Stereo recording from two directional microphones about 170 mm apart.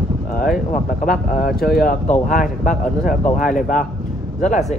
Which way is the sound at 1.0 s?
55° left (ahead or behind).